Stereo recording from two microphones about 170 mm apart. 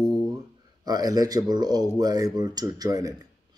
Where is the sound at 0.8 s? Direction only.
20° right (ahead or behind).